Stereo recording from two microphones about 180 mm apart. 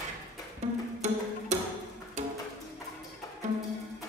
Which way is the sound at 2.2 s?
40° right (ahead or behind).